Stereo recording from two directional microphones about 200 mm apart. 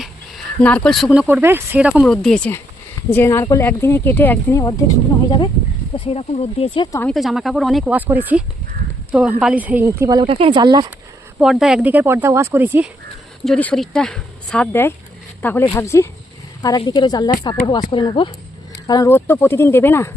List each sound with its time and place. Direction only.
0.0 s a sound: 5° left (ahead or behind)
1.3 s speech: 10° right (ahead or behind); by 4.7 s 10° left (ahead or behind)
6.1 s speech: 30° left (ahead or behind)
7.1 s speech: centre (ahead or behind); by 10.8 s 20° right (ahead or behind)
11.3 s speech: centre (ahead or behind)
13.4 s speech: 5° left (ahead or behind)